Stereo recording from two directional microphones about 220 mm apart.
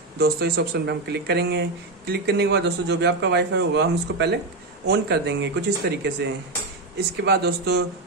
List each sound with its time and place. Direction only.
0.2 s speech: 45° right (ahead or behind)
7.2 s speech: 50° right (ahead or behind)